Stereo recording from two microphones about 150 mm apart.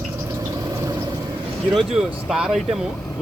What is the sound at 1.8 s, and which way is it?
Speech, centre (ahead or behind).